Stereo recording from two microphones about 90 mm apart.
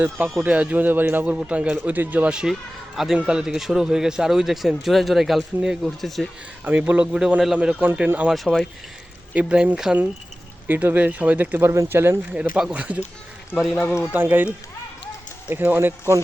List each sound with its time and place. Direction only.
0.4 s a man's voice: 15° right (ahead or behind); by 6.2 s centre (ahead or behind)
6.7 s a man's voice: 15° right (ahead or behind)
12.3 s a man's voice: 10° right (ahead or behind)
14.1 s speech: 20° right (ahead or behind)